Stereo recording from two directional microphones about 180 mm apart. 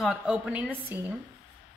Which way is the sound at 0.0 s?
5° right (ahead or behind).